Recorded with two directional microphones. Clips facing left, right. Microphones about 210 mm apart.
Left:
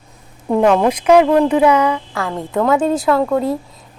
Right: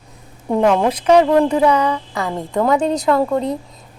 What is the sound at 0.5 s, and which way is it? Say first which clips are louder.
Speech: left 2 dB; 5° left (ahead or behind).